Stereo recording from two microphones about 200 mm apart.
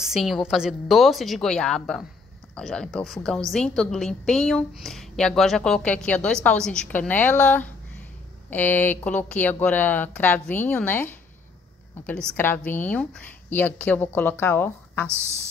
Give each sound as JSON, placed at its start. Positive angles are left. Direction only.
{"t": 0.0, "sound": "a woman's voice", "side_deg": 0}